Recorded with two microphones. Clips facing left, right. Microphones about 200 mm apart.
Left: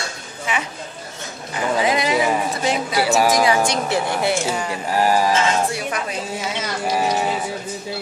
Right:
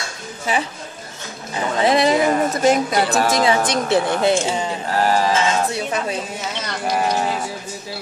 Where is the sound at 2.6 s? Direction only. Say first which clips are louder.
Right 6 dB; 45° right (ahead or behind).